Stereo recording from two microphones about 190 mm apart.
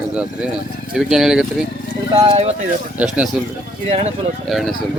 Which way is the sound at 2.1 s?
20° right (ahead or behind).